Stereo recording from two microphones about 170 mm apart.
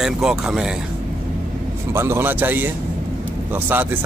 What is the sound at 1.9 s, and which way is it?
Speech, 15° right (ahead or behind).